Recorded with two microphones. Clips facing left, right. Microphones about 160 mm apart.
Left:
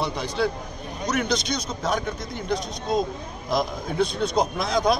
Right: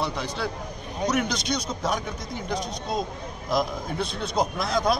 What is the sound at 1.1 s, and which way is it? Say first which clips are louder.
A man's voice: left 4 dB; 10° right (ahead or behind).